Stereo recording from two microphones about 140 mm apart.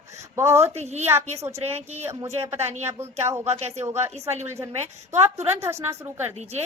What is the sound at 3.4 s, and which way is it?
Speech, 50° right (ahead or behind).